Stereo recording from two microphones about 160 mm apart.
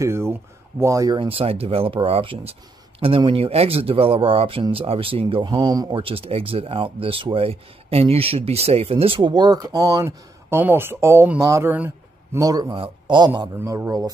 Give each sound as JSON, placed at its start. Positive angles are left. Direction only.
{"t": 0.0, "sound": "a man's voice", "side_deg": -15}
{"t": 13.6, "sound": "a man's voice", "side_deg": -15}